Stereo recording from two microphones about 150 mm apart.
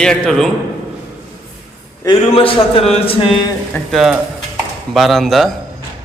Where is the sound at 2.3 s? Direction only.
40° left (ahead or behind).